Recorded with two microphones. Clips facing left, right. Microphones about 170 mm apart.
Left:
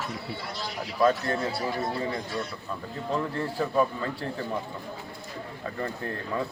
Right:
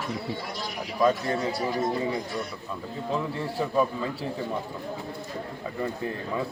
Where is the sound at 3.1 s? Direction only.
5° right (ahead or behind).